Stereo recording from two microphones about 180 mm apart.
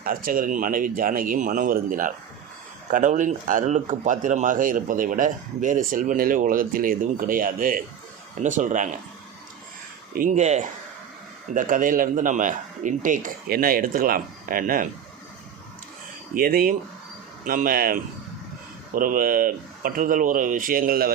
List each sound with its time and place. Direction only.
0.0 s speech: 50° right (ahead or behind)
10.2 s speech: 45° right (ahead or behind)
16.3 s speech: 55° right (ahead or behind)